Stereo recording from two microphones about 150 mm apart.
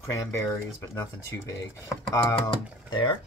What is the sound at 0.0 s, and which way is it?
Speech, 20° left (ahead or behind).